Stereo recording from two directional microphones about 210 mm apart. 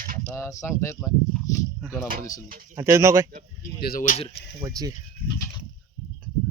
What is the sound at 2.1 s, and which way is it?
Speech, 45° right (ahead or behind).